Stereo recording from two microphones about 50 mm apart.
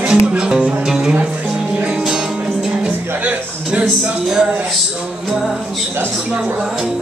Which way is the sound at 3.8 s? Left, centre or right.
Centre.